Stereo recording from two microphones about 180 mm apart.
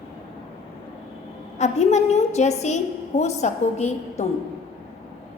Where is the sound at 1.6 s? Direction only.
40° left (ahead or behind).